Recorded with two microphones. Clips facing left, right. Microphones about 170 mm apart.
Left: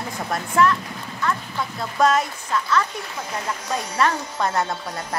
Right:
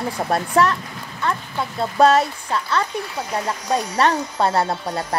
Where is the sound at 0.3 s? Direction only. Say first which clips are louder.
Right 1 dB; 35° right (ahead or behind).